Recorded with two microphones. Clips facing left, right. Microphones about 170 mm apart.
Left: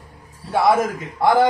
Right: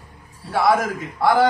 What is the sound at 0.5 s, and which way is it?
Speech, 20° left (ahead or behind).